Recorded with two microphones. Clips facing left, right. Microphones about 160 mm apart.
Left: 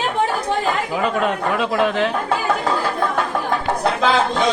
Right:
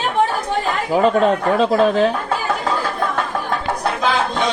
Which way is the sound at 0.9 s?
35° right (ahead or behind).